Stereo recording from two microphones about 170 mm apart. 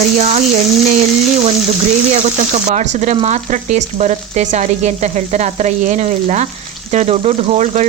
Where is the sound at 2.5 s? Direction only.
40° right (ahead or behind).